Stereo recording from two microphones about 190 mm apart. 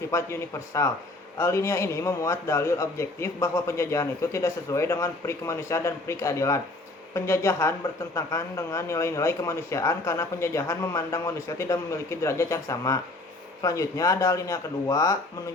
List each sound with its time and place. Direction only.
0.1 s a man's voice: 15° left (ahead or behind)